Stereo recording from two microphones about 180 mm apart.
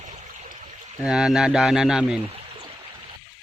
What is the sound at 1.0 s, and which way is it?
Speech, 5° right (ahead or behind).